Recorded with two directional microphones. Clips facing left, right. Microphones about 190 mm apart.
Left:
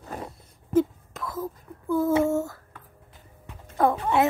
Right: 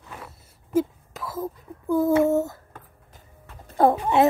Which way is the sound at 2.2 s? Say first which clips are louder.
Right 3 dB; 20° right (ahead or behind).